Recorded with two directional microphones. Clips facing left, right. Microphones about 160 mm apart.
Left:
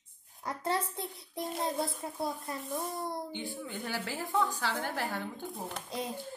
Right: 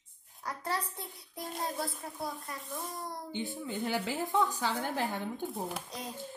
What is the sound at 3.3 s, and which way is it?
Speech, 15° right (ahead or behind).